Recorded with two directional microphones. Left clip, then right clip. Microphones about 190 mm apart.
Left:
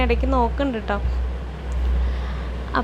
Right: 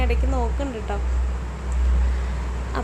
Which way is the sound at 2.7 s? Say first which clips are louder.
Left 7 dB; 10° left (ahead or behind).